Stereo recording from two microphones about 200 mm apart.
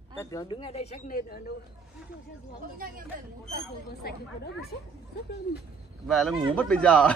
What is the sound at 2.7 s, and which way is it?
Speech, 45° right (ahead or behind).